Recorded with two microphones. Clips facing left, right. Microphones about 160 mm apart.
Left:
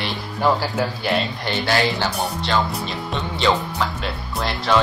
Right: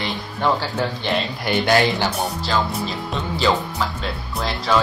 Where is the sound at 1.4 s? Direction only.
20° right (ahead or behind).